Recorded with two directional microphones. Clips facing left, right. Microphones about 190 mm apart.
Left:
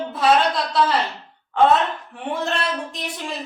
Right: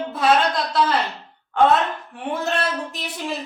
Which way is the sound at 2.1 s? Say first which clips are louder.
Right 1 dB; centre (ahead or behind).